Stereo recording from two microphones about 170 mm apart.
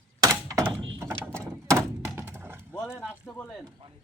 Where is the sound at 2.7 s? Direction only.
15° left (ahead or behind).